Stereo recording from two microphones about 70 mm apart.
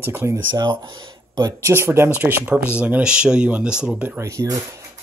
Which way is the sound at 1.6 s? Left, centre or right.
Right.